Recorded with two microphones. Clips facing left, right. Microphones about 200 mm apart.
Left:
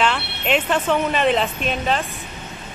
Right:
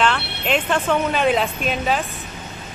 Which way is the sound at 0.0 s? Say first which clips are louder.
Right 1 dB; centre (ahead or behind).